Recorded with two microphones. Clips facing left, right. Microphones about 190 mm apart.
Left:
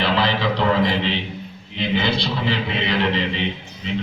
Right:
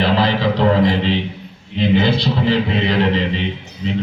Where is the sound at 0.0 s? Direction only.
40° right (ahead or behind).